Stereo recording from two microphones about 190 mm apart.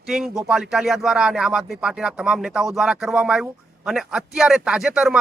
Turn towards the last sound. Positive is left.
turn(degrees=-5)  # may be behind; listen again after turning